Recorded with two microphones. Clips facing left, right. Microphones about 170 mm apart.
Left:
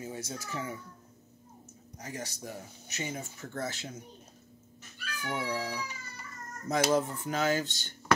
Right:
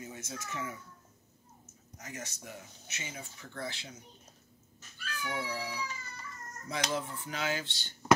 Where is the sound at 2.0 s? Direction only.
35° left (ahead or behind).